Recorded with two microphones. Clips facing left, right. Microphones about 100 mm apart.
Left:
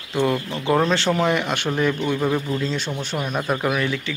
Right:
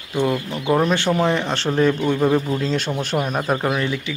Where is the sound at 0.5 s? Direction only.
15° right (ahead or behind).